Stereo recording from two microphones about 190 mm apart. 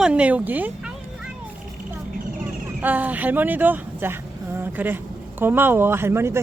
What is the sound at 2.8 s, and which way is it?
Speech, 10° right (ahead or behind).